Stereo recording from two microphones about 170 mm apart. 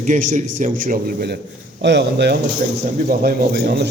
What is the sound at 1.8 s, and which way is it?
Speech, 85° right.